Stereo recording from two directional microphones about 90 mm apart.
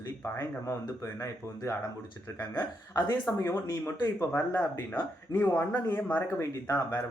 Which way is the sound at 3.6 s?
45° left (ahead or behind).